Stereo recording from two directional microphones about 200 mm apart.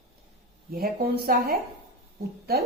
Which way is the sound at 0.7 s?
50° right (ahead or behind).